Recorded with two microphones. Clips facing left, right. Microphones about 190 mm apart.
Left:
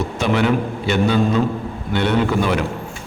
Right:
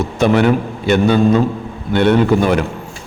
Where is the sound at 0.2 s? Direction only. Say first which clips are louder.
Right 5 dB; 50° right (ahead or behind).